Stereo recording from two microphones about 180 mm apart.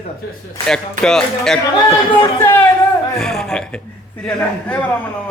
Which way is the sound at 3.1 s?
Centre (ahead or behind).